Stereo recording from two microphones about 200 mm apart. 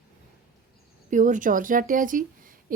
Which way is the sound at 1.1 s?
40° right (ahead or behind).